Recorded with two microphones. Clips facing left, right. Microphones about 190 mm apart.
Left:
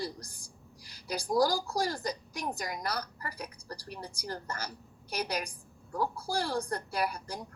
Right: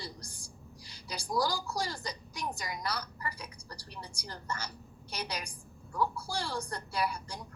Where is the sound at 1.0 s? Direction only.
50° left (ahead or behind).